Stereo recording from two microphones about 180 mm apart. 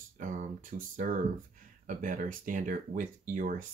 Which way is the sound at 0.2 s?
45° right (ahead or behind).